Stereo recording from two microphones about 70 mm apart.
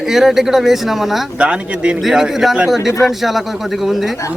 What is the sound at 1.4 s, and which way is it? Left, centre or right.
Speech, centre.